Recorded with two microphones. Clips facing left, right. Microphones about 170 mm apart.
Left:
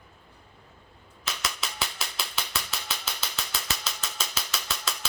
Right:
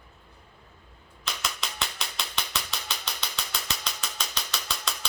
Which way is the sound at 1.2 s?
5° left (ahead or behind).